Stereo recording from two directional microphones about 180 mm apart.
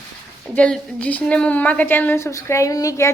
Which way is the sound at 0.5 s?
5° left (ahead or behind).